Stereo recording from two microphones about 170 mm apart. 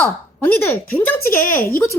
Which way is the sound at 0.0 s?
10° left (ahead or behind).